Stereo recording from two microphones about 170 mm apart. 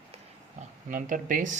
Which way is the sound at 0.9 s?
50° right (ahead or behind).